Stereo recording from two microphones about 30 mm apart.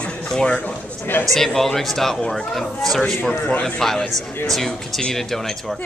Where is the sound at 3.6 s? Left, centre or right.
Centre.